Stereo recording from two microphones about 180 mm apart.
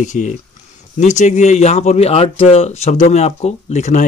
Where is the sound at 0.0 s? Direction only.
45° left (ahead or behind).